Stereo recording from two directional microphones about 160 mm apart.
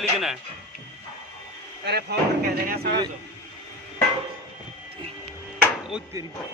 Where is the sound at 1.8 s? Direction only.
85° right.